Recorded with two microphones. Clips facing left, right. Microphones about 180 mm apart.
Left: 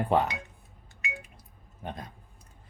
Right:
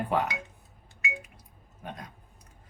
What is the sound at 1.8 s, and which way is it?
Speech, 30° left (ahead or behind).